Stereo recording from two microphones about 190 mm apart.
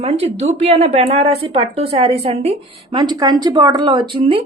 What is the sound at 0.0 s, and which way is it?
Speech, 30° right (ahead or behind).